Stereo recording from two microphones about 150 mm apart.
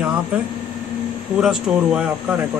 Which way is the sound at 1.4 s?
5° right (ahead or behind).